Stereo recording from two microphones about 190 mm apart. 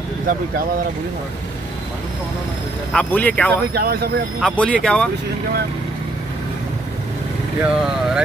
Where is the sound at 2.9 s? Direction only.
5° left (ahead or behind).